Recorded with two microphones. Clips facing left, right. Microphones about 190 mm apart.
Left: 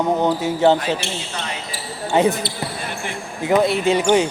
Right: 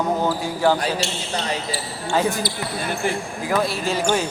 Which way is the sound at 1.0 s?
55° left (ahead or behind).